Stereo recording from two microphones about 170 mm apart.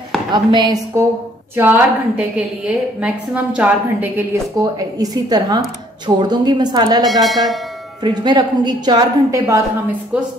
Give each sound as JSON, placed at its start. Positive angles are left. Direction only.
{"t": 0.3, "sound": "a woman's voice", "side_deg": -25}
{"t": 1.5, "sound": "a woman's voice", "side_deg": -10}
{"t": 7.1, "sound": "speech", "side_deg": 0}
{"t": 8.0, "sound": "a woman's voice", "side_deg": -25}